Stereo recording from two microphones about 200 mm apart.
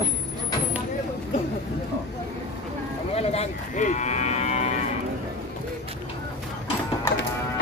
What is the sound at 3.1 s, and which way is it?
Cattle, 35° left (ahead or behind).